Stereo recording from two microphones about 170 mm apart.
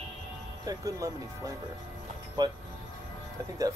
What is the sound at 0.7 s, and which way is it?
Speech, 20° right (ahead or behind).